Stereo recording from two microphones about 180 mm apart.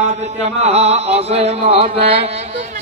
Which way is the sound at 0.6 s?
35° right (ahead or behind).